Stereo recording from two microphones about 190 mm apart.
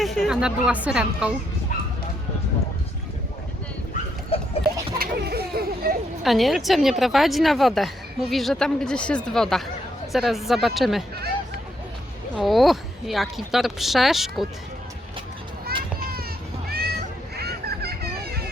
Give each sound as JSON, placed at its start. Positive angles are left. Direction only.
{"t": 0.0, "sound": "a woman's voice", "side_deg": 0}
{"t": 4.3, "sound": "a sound", "side_deg": 30}
{"t": 4.9, "sound": "children playing", "side_deg": -55}
{"t": 6.2, "sound": "a woman's voice", "side_deg": 0}
{"t": 12.4, "sound": "a woman's voice", "side_deg": 0}
{"t": 16.6, "sound": "cat", "side_deg": -55}
{"t": 17.3, "sound": "fowl", "side_deg": -55}